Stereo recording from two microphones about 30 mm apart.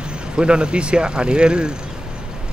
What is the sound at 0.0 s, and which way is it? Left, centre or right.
Speech, right.